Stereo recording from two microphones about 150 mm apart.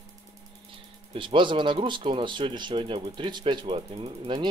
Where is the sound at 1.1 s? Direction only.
35° right (ahead or behind).